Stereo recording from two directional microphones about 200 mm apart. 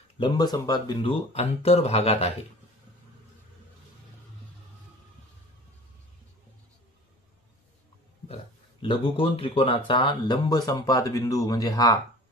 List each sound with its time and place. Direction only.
0.2 s speech: 20° left (ahead or behind)
8.8 s speech: 25° left (ahead or behind)